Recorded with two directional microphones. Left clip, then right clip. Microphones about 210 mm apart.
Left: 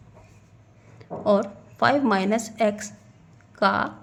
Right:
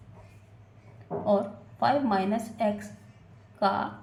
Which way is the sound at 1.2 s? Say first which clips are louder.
Left 5 dB; 50° left (ahead or behind).